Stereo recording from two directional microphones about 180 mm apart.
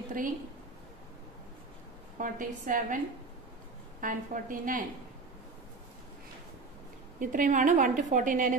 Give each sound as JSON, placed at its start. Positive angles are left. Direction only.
{"t": 2.1, "sound": "a woman's voice", "side_deg": -45}
{"t": 4.0, "sound": "a woman's voice", "side_deg": -50}
{"t": 7.2, "sound": "a woman's voice", "side_deg": -45}